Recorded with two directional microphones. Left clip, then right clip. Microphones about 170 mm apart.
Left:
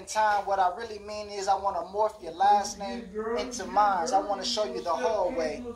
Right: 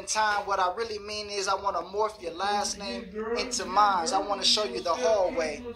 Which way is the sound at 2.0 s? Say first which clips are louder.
Left 6 dB; 30° left (ahead or behind).